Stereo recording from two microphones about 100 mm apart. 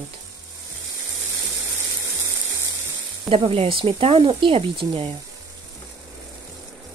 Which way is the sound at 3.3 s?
70° right (ahead or behind).